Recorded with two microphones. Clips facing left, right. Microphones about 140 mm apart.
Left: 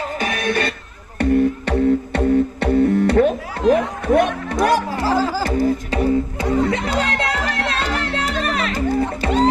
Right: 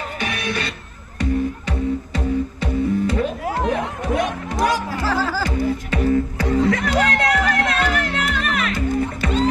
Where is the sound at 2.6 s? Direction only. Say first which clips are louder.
Left 5 dB; 70° left (ahead or behind).